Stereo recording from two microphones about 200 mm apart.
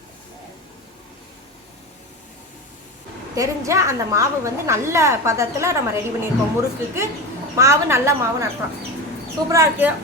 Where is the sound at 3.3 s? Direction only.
15° right (ahead or behind).